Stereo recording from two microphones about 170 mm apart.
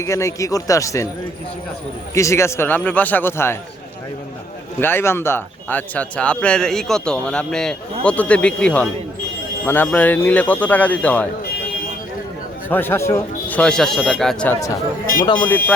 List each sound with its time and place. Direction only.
0.0 s speech: 15° left (ahead or behind)
2.1 s speech: 15° left (ahead or behind)
4.8 s speech: 15° left (ahead or behind)
12.6 s speech: 10° left (ahead or behind)
15.0 s speech: 55° left (ahead or behind)
15.4 s speech: 10° left (ahead or behind)